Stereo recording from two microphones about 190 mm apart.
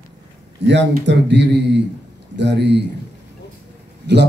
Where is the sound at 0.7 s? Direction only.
70° right (ahead or behind).